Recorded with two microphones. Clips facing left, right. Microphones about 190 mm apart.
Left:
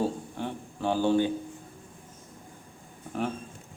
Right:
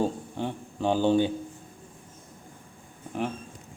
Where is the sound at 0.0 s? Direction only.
15° right (ahead or behind).